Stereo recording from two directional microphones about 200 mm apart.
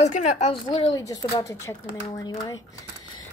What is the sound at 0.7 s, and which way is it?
Speech, 20° left (ahead or behind).